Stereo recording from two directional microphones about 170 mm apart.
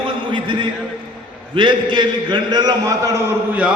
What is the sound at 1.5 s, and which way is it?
A man's voice, 25° right (ahead or behind).